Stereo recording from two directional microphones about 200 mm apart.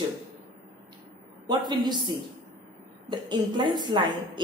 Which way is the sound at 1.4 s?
20° right (ahead or behind).